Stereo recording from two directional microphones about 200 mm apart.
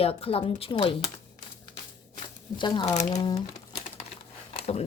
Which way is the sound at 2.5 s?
25° left (ahead or behind).